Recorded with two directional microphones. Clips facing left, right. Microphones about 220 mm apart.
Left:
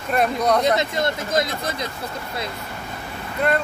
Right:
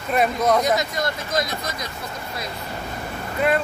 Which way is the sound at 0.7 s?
25° left (ahead or behind).